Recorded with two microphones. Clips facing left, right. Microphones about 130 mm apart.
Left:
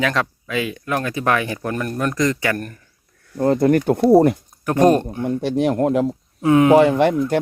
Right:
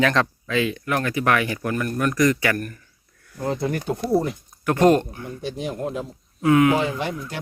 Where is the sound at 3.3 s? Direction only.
50° left (ahead or behind).